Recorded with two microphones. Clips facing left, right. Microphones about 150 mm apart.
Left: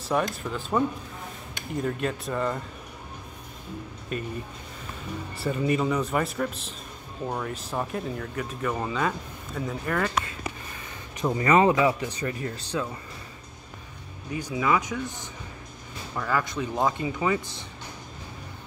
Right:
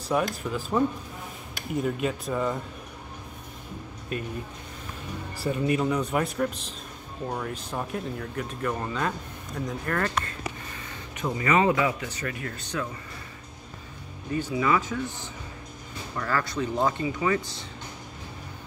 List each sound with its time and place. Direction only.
0.1 s speech: 5° right (ahead or behind)
4.1 s speech: centre (ahead or behind)
5.4 s speech: centre (ahead or behind)
11.3 s speech: 30° left (ahead or behind)
14.3 s speech: 10° left (ahead or behind)
16.2 s speech: 10° left (ahead or behind)